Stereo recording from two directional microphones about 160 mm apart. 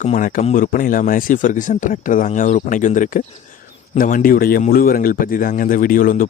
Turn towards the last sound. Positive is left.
turn(degrees=60)  # may be behind; listen again after turning